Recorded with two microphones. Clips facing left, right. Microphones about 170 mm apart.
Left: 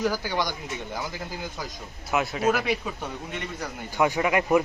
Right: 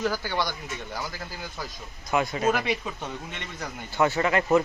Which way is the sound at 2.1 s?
5° left (ahead or behind).